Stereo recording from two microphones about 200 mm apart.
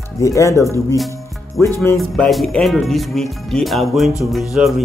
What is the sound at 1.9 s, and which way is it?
Speech, centre (ahead or behind).